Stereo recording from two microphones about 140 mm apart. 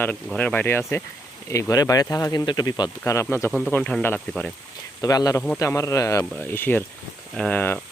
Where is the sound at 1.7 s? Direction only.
25° left (ahead or behind).